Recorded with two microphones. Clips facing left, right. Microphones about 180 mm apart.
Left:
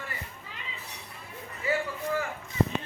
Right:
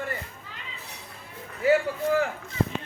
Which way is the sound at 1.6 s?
75° right (ahead or behind).